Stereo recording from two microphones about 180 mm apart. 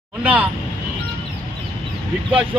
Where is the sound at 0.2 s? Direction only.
10° right (ahead or behind).